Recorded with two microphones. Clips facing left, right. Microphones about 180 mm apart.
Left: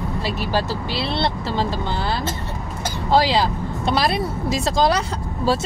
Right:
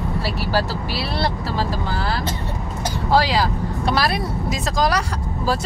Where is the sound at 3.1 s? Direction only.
20° left (ahead or behind).